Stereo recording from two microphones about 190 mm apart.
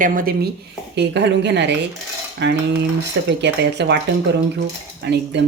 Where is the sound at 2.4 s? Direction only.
65° right (ahead or behind).